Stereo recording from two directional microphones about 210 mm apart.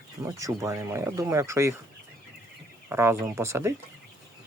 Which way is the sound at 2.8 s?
10° right (ahead or behind).